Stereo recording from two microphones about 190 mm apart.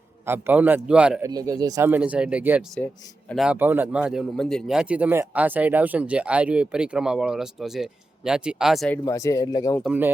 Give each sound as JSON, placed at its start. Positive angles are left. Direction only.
{"t": 0.3, "sound": "speech", "side_deg": -10}
{"t": 1.3, "sound": "speech", "side_deg": -20}
{"t": 2.7, "sound": "a man's voice", "side_deg": 5}
{"t": 9.0, "sound": "speech", "side_deg": 15}
{"t": 9.8, "sound": "speech", "side_deg": -10}